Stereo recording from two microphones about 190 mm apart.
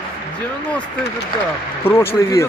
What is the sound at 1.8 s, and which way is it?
Speech, 10° left (ahead or behind).